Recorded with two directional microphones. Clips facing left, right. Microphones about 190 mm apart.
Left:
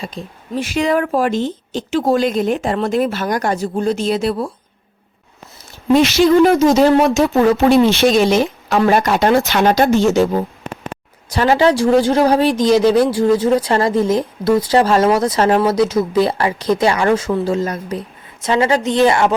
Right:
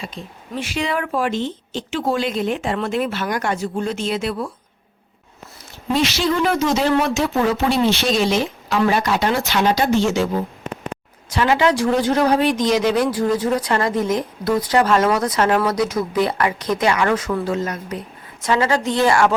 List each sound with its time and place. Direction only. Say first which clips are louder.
0.0 s speech: left 4 dB; 40° left (ahead or behind)
5.9 s speech: left 8 dB; 50° left (ahead or behind); by 19.3 s 20° left (ahead or behind)